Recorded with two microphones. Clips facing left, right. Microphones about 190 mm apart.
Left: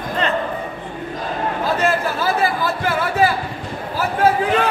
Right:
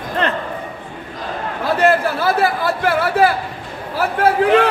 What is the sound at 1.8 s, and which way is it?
A man's voice, 60° right (ahead or behind).